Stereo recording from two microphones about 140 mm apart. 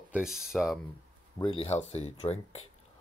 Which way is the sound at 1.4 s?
40° left (ahead or behind).